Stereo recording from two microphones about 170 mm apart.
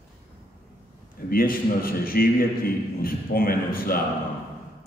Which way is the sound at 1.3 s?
55° left (ahead or behind).